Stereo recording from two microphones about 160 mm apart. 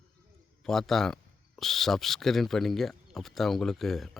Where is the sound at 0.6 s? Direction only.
Centre (ahead or behind).